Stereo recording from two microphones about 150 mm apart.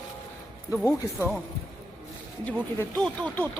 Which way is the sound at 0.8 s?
15° left (ahead or behind).